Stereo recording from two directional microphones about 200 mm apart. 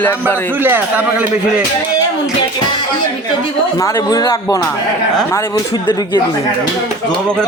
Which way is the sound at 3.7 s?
15° left (ahead or behind).